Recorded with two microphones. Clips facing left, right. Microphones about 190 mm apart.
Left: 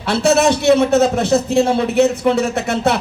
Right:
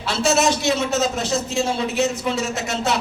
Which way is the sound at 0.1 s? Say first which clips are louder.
Left 5 dB; 60° left (ahead or behind).